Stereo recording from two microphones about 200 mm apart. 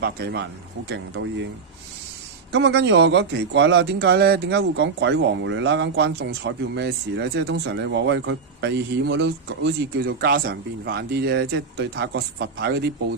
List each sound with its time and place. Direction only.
0.0 s a man's voice: 55° right (ahead or behind)
2.5 s a man's voice: 60° right (ahead or behind)